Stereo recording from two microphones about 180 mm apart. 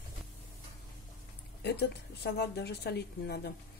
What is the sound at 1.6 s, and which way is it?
A woman's voice, 65° left (ahead or behind).